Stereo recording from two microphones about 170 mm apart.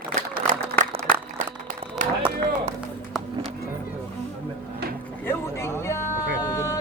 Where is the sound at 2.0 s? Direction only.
50° right (ahead or behind).